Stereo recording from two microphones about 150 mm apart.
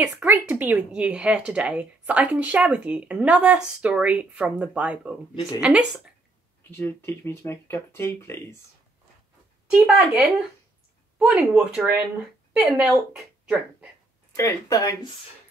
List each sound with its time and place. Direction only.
0.0 s speech: 10° right (ahead or behind)
6.7 s speech: 15° left (ahead or behind)
9.7 s a woman's voice: 10° right (ahead or behind)
14.3 s speech: 20° left (ahead or behind)